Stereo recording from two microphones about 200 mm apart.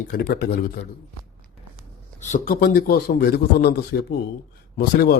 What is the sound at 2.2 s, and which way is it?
A man's voice, 40° left (ahead or behind).